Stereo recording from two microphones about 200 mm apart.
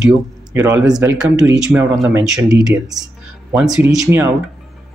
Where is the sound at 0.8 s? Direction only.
20° right (ahead or behind).